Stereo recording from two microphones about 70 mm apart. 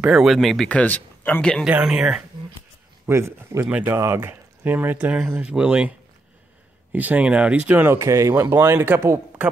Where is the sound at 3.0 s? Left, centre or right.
Right.